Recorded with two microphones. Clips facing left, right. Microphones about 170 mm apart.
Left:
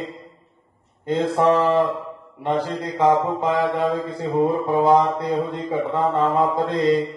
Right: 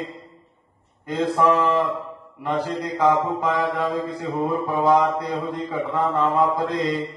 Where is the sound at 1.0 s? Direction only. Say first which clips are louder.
Left 2 dB; 30° left (ahead or behind).